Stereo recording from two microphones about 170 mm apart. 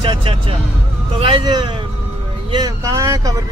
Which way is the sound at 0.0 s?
30° right (ahead or behind).